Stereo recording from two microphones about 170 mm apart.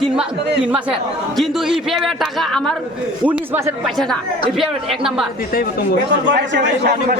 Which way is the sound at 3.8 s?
5° left (ahead or behind).